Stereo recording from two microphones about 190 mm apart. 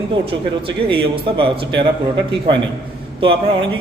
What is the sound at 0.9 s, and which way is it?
Speech, 30° right (ahead or behind).